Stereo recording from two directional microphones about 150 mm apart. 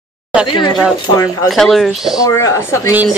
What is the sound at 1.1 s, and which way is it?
Speech, 20° left (ahead or behind).